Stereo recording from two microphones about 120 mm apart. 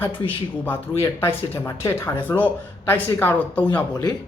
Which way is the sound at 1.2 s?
20° left (ahead or behind).